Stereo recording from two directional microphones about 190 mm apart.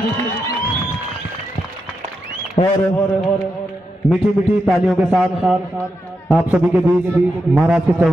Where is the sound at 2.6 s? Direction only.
25° left (ahead or behind).